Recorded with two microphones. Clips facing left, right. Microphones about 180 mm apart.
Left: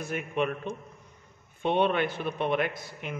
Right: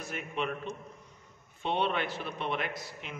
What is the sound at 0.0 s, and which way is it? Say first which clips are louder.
A man's voice: left 6 dB; 55° left (ahead or behind).